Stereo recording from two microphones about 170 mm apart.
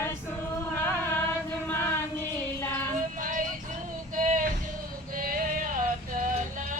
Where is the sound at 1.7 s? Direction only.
15° left (ahead or behind).